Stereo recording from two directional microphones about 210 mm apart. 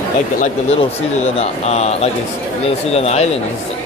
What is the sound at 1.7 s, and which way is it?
Speech, 30° left (ahead or behind).